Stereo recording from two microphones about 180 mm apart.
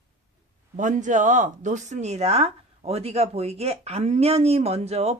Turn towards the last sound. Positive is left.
turn(degrees=-35)  # may be behind; listen again after turning